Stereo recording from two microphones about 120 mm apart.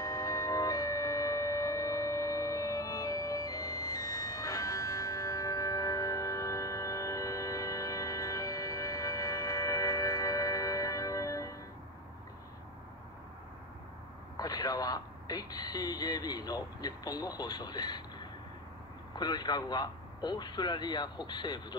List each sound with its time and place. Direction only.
0.0 s a sound: 30° left (ahead or behind)
14.3 s speech: 35° left (ahead or behind)
19.1 s speech: 35° left (ahead or behind)